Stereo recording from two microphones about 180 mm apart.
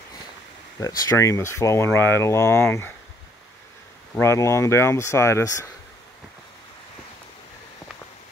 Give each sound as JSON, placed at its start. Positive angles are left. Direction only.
{"t": 0.7, "sound": "speech", "side_deg": 20}
{"t": 4.2, "sound": "speech", "side_deg": 15}